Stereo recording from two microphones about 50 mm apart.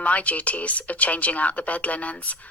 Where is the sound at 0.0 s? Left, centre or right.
Left.